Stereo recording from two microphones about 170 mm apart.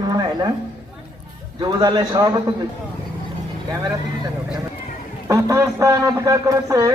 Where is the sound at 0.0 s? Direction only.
20° right (ahead or behind).